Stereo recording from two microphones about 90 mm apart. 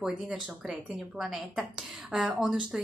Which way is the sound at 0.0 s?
5° right (ahead or behind).